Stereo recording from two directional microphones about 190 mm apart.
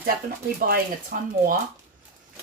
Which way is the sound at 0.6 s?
50° right (ahead or behind).